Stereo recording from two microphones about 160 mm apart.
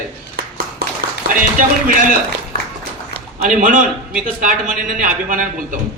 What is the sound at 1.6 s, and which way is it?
Speech, 55° right (ahead or behind).